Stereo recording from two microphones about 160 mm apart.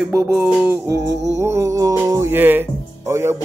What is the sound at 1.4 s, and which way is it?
Speech, 15° right (ahead or behind).